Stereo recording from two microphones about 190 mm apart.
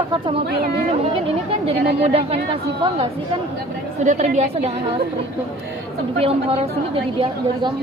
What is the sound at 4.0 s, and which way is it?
A woman's voice, 40° right (ahead or behind).